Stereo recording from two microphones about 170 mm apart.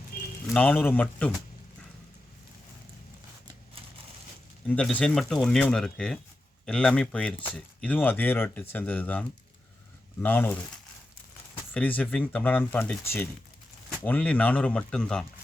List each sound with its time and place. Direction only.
0.1 s a sound: 60° left (ahead or behind)
0.5 s speech: 10° left (ahead or behind)
4.7 s speech: 5° left (ahead or behind)
11.7 s speech: 10° left (ahead or behind)